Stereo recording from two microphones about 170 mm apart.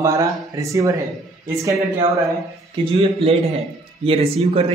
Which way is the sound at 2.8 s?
35° right (ahead or behind).